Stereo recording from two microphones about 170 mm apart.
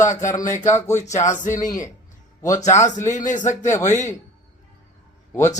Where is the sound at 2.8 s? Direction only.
45° left (ahead or behind).